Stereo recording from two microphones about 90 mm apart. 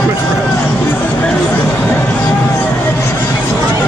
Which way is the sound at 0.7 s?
20° left (ahead or behind).